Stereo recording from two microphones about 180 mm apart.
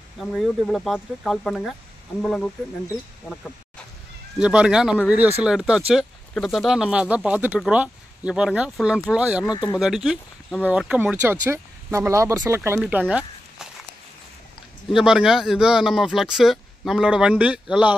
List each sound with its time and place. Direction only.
0.2 s speech: centre (ahead or behind)
4.4 s speech: 5° right (ahead or behind)
9.5 s speech: 20° left (ahead or behind)
9.8 s speech: centre (ahead or behind)
15.0 s speech: 5° right (ahead or behind)